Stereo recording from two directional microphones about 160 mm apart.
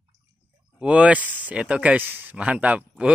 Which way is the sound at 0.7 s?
5° right (ahead or behind).